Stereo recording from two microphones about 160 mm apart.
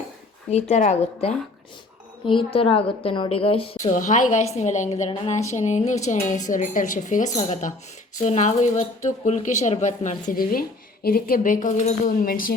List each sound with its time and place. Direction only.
0.5 s speech: 45° left (ahead or behind)
2.2 s a woman's voice: 30° left (ahead or behind)
3.9 s speech: 50° left (ahead or behind)